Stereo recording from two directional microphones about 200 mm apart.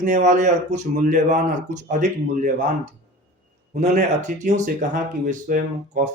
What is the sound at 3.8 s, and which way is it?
A man's voice, 35° right (ahead or behind).